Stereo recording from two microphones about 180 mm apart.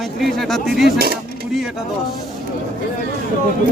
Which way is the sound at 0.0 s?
Centre (ahead or behind).